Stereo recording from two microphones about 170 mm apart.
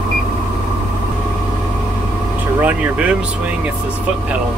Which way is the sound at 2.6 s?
10° right (ahead or behind).